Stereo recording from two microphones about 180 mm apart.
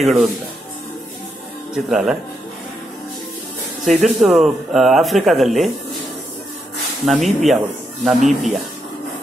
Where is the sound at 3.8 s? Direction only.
Centre (ahead or behind).